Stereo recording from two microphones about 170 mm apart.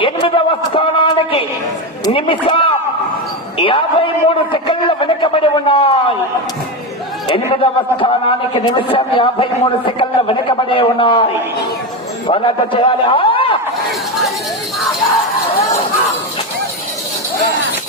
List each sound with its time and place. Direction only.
0.0 s a sound: 30° left (ahead or behind)
2.1 s a man's voice: 30° left (ahead or behind)
7.3 s a man's voice: 30° left (ahead or behind)
12.3 s a man's voice: 30° left (ahead or behind)